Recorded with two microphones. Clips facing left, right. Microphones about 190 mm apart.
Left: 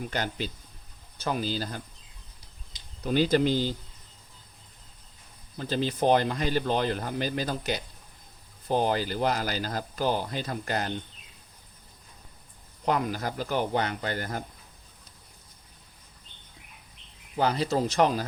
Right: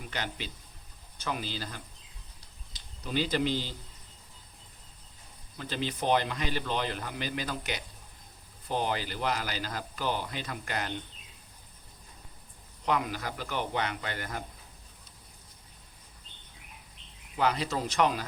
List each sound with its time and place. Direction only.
0.1 s speech: 40° left (ahead or behind)
3.0 s speech: 50° left (ahead or behind)
5.5 s speech: 35° left (ahead or behind)
12.8 s speech: 40° left (ahead or behind)
17.3 s speech: 35° left (ahead or behind)